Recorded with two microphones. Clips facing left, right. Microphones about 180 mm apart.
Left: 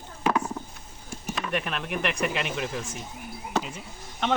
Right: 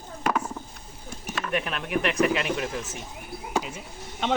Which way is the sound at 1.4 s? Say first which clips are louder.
Right 1 dB; centre (ahead or behind).